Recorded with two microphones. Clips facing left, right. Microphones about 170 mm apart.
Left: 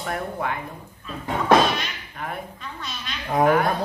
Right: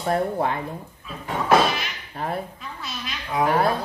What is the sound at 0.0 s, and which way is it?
Speech, 30° right (ahead or behind).